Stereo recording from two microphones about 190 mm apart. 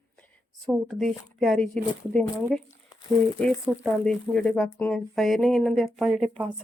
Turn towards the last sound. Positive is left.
turn(degrees=-5)  # may be behind; listen again after turning